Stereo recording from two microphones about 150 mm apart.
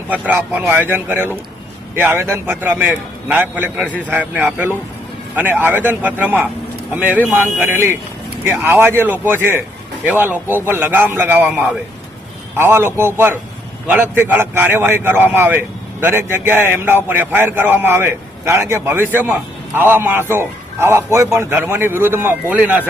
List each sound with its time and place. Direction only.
0.1 s a man's voice: 10° right (ahead or behind)